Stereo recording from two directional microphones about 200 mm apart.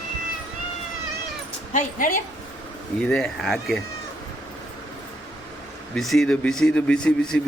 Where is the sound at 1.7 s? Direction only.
40° left (ahead or behind).